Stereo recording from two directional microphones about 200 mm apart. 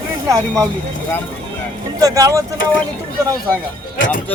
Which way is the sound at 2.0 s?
20° right (ahead or behind).